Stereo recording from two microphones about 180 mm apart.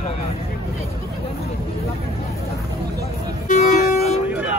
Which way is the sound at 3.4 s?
40° left (ahead or behind).